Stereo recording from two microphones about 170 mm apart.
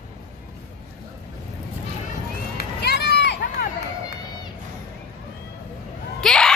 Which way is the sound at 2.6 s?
75° left (ahead or behind).